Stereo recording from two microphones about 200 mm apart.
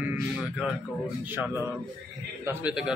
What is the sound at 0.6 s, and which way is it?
A man's voice, 5° right (ahead or behind).